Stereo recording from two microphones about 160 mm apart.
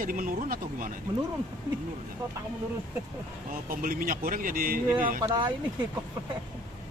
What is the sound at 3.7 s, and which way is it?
Speech, 60° right (ahead or behind).